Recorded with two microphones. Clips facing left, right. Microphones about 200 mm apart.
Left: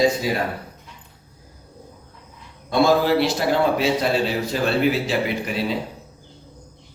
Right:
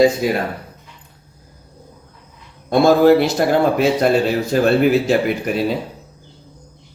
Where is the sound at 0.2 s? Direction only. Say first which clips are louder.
Right 5 dB; 50° right (ahead or behind).